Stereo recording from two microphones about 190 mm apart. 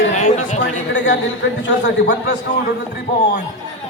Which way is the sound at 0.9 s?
70° left (ahead or behind).